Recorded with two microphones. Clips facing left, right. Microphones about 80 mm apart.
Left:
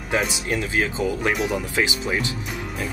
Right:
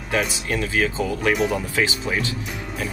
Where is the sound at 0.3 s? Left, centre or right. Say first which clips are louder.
Even; left.